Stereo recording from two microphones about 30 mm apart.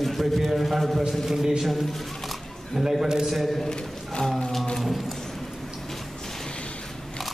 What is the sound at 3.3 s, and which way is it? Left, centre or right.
Speech, centre.